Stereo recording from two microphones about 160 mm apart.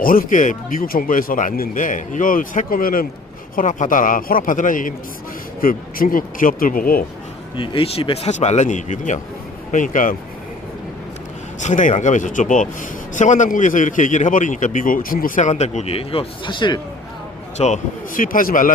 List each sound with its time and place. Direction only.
0.0 s speech: 60° left (ahead or behind)
7.5 s speech: 30° left (ahead or behind); by 10.2 s 55° left (ahead or behind)
11.6 s a man's voice: 50° left (ahead or behind); by 16.8 s 30° left (ahead or behind)
17.6 s speech: 55° left (ahead or behind)